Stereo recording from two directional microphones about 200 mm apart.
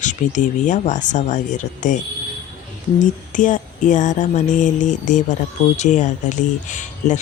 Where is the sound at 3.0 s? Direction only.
40° left (ahead or behind).